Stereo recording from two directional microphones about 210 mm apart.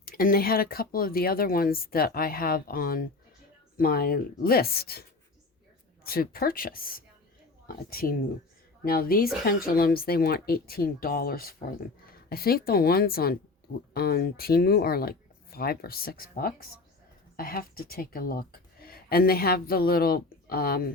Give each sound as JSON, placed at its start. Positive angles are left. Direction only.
{"t": 0.0, "sound": "speech", "side_deg": 45}
{"t": 6.1, "sound": "speech", "side_deg": 45}